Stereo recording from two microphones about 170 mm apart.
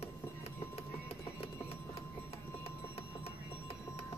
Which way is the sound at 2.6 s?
35° left (ahead or behind).